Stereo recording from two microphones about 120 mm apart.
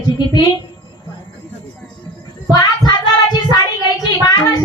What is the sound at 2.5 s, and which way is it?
Child singing, 35° left (ahead or behind).